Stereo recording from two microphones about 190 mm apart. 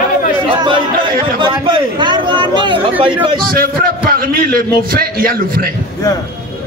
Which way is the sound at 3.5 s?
50° right (ahead or behind).